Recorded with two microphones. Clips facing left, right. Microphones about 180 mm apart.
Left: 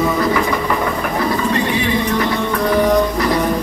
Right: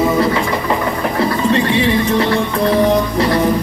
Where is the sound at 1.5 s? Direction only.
25° right (ahead or behind).